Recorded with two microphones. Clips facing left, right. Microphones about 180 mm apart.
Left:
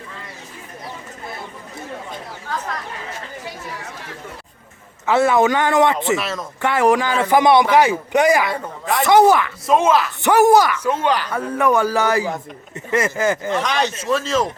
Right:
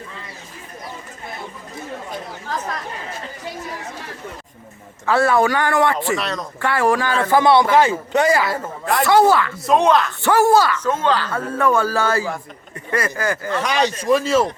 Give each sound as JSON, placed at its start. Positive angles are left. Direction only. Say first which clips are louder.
{"t": 5.0, "sound": "speech", "louder": "left 1 dB", "side_deg": 20}
{"t": 6.1, "sound": "speech", "louder": "even", "side_deg": 0}
{"t": 6.6, "sound": "a man's voice", "louder": "left 2 dB", "side_deg": 20}
{"t": 8.4, "sound": "speech", "louder": "right 1 dB", "side_deg": -5}
{"t": 9.0, "sound": "a man's voice", "louder": "left 2 dB", "side_deg": 20}
{"t": 9.6, "sound": "speech", "louder": "even", "side_deg": 0}
{"t": 10.2, "sound": "a man's voice", "louder": "left 2 dB", "side_deg": 20}
{"t": 13.6, "sound": "speech", "louder": "right 1 dB", "side_deg": -10}